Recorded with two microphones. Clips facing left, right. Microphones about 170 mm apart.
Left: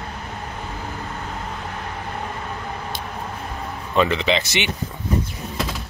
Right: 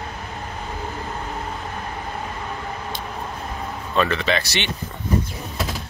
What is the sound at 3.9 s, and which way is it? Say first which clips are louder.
Speech: left 2 dB; 15° left (ahead or behind).